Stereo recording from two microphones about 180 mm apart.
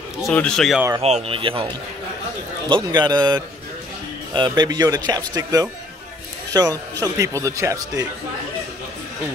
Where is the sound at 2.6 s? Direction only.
25° right (ahead or behind).